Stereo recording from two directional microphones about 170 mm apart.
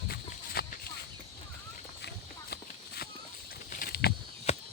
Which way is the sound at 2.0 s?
70° left (ahead or behind).